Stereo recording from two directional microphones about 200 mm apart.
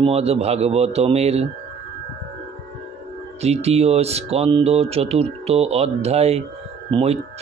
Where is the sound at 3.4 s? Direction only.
30° right (ahead or behind).